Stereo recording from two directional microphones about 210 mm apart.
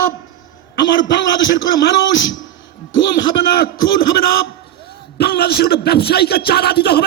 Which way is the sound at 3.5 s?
45° left (ahead or behind).